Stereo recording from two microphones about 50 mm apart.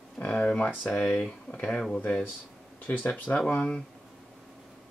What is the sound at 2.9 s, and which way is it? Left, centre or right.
Speech, left.